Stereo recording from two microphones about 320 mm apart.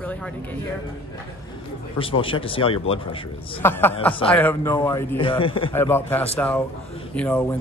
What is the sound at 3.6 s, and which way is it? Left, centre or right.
A man's voice, centre.